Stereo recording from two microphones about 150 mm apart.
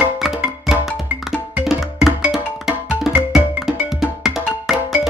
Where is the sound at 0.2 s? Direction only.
5° right (ahead or behind).